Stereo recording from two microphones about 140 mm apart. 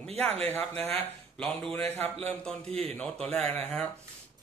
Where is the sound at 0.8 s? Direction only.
10° left (ahead or behind).